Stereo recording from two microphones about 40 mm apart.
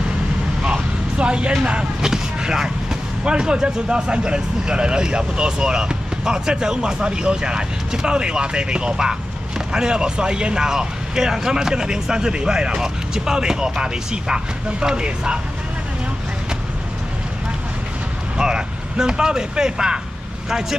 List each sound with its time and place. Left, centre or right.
0.7 s vehicle: right
1.6 s speech: right
18.4 s speech: centre